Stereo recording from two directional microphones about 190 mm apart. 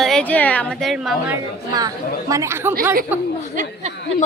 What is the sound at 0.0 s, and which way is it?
A woman's voice, 5° left (ahead or behind).